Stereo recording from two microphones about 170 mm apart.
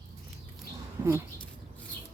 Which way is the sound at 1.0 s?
15° right (ahead or behind).